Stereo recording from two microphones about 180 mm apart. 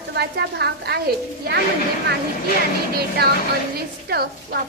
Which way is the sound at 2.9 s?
60° right (ahead or behind).